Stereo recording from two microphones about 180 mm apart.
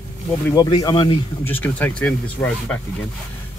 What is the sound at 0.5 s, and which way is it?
Speech, 20° left (ahead or behind).